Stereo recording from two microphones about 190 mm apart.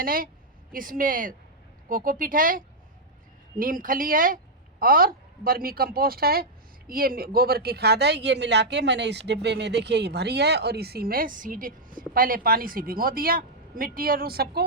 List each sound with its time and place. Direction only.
0.0 s a woman's voice: 50° right (ahead or behind)